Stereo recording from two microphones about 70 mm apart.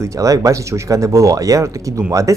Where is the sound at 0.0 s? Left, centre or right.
Right.